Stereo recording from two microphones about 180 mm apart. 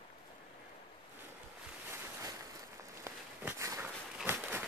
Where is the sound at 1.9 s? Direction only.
15° right (ahead or behind).